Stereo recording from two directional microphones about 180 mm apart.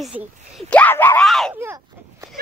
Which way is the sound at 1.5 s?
15° right (ahead or behind).